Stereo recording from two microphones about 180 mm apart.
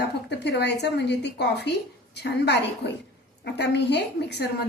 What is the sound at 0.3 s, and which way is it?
A woman's voice, 70° left (ahead or behind).